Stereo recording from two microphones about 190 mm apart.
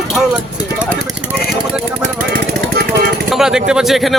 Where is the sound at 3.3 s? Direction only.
5° right (ahead or behind).